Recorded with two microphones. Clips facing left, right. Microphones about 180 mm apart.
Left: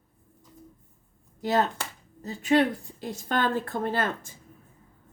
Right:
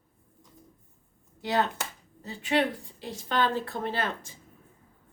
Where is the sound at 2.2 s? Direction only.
40° left (ahead or behind).